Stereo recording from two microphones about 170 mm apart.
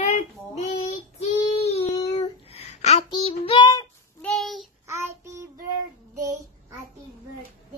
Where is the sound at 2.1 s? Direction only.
40° left (ahead or behind).